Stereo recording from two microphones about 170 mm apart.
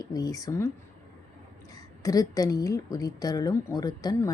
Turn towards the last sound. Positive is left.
turn(degrees=20)  # may be behind; listen again after turning